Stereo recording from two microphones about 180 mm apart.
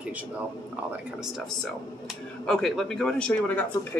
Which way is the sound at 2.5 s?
Centre (ahead or behind).